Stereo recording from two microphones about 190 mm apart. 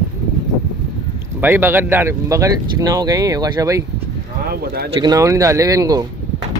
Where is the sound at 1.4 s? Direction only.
10° right (ahead or behind).